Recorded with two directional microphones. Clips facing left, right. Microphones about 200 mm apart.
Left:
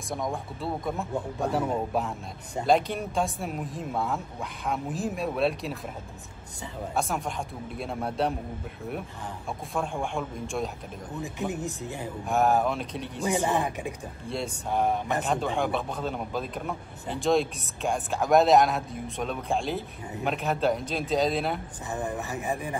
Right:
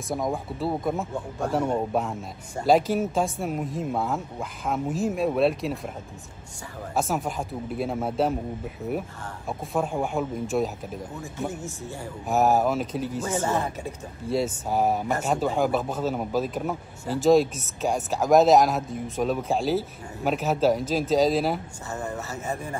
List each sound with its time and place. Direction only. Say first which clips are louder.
0.1 s a man's voice: right 4 dB; centre (ahead or behind)
7.0 s a man's voice: right 4 dB; centre (ahead or behind)
9.5 s a man's voice: right 5 dB; 5° right (ahead or behind)
11.1 s speech: left 3 dB; 15° left (ahead or behind)
12.3 s a man's voice: right 3 dB; 5° right (ahead or behind)
13.2 s speech: left 2 dB; 15° left (ahead or behind)
14.3 s a man's voice: right 5 dB; 5° right (ahead or behind)
21.9 s speech: left 1 dB; 15° left (ahead or behind)